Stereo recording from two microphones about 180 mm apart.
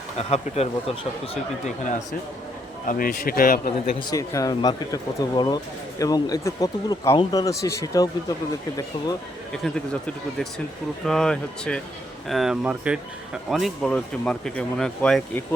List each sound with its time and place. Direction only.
0.2 s speech: 35° left (ahead or behind); by 3.6 s 55° left (ahead or behind)
4.1 s speech: 20° left (ahead or behind)
9.6 s speech: 5° left (ahead or behind)